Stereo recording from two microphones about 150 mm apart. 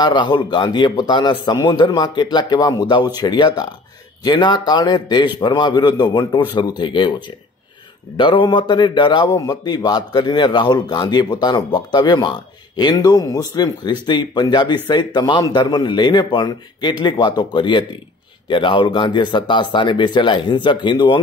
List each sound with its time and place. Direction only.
0.0 s a man's voice: 30° left (ahead or behind)
8.2 s a man's voice: 35° left (ahead or behind)